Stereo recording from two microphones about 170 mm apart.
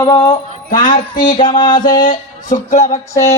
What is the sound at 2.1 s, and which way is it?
Speech, 45° left (ahead or behind).